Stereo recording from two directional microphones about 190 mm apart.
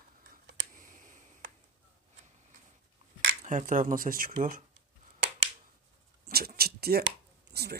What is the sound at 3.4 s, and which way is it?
Speech, 40° right (ahead or behind).